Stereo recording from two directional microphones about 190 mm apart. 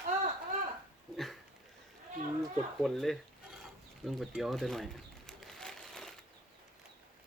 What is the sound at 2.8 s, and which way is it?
Speech, centre (ahead or behind).